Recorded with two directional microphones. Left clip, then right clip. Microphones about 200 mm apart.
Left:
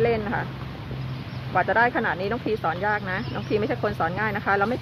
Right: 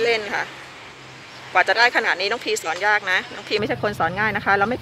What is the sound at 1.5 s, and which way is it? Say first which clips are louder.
Speech: right 4 dB; 15° right (ahead or behind).